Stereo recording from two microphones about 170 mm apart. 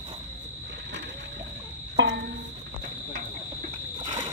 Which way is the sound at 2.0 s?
90° right.